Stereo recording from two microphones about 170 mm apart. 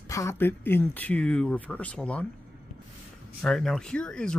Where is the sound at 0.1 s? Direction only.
15° left (ahead or behind).